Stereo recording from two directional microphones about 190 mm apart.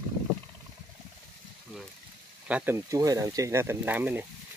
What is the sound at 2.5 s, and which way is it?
Speech, 5° right (ahead or behind).